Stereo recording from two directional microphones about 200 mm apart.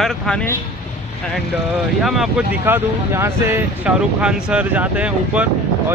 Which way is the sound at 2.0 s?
Centre (ahead or behind).